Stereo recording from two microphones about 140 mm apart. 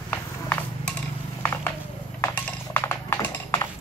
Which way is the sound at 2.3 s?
15° left (ahead or behind).